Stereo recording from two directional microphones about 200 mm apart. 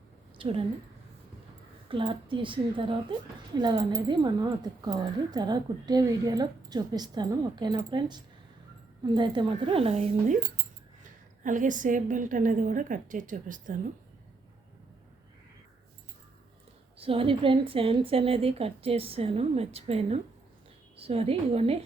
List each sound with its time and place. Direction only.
0.3 s a sound: 25° right (ahead or behind)
1.9 s a woman's voice: 25° right (ahead or behind)
17.0 s a woman's voice: 30° right (ahead or behind)